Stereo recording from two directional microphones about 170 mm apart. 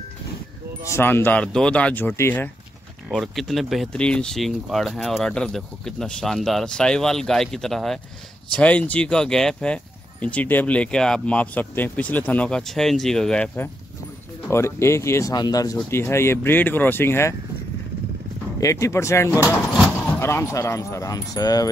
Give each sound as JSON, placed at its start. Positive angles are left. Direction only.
{"t": 0.8, "sound": "speech", "side_deg": 15}
{"t": 3.1, "sound": "speech", "side_deg": 0}
{"t": 18.6, "sound": "speech", "side_deg": 15}